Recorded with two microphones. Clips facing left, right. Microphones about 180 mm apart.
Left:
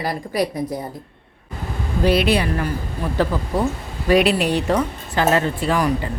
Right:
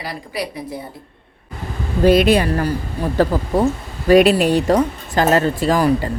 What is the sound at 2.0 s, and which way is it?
Speech, 45° right (ahead or behind).